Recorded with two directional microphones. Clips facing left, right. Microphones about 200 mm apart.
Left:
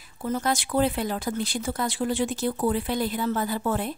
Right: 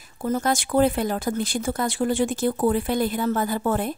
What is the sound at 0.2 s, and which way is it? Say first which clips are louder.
Speech: right 3 dB; 45° right (ahead or behind).